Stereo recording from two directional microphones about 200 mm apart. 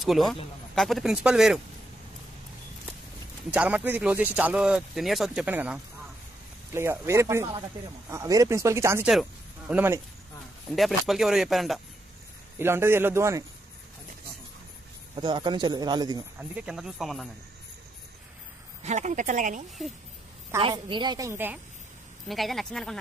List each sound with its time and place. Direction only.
0.0 s speech: centre (ahead or behind)
3.5 s speech: 5° right (ahead or behind)
9.0 s speech: centre (ahead or behind)
10.7 s speech: centre (ahead or behind)
12.5 s speech: 10° right (ahead or behind)
15.1 s speech: 25° right (ahead or behind)
16.3 s speech: 5° right (ahead or behind)
18.8 s speech: 35° right (ahead or behind)
20.5 s speech: 25° right (ahead or behind)
22.3 s speech: centre (ahead or behind)